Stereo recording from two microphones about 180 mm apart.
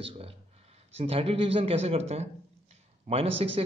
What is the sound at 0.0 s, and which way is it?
A man's voice, 30° right (ahead or behind).